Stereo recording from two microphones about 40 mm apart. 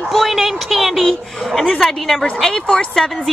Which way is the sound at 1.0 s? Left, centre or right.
Centre.